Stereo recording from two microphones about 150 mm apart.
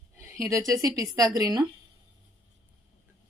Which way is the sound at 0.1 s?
20° right (ahead or behind).